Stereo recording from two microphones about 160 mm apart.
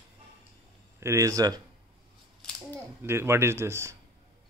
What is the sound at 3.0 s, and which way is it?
Speech, 15° right (ahead or behind).